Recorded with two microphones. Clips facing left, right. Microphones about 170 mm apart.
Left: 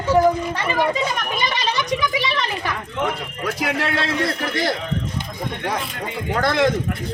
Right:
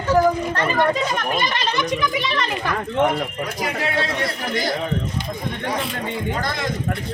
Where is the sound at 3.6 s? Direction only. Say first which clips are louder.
Even; 70° left (ahead or behind).